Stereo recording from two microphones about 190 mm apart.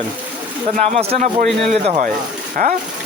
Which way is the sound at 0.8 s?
35° right (ahead or behind).